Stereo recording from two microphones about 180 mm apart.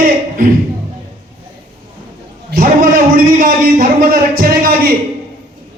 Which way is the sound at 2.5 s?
50° right (ahead or behind).